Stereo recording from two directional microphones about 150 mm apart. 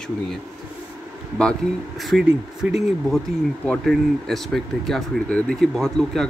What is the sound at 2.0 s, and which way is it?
Speech, centre (ahead or behind).